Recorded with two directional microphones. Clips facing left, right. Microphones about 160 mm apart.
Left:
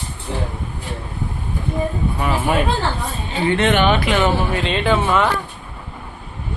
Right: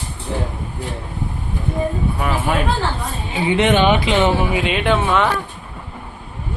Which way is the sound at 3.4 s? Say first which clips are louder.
Right 1 dB; 15° right (ahead or behind).